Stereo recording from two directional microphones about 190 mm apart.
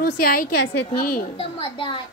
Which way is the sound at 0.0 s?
50° left (ahead or behind).